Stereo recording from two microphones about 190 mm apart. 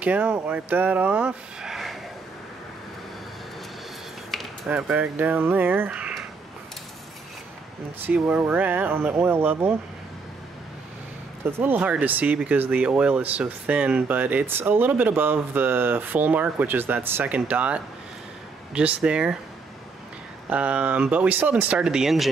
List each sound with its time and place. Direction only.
0.0 s speech: 5° right (ahead or behind)
4.3 s speech: 5° right (ahead or behind)
8.0 s speech: 10° right (ahead or behind)
11.4 s speech: 10° right (ahead or behind)
20.4 s speech: 5° right (ahead or behind)